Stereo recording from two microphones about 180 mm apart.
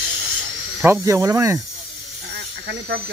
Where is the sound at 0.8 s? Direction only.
15° right (ahead or behind).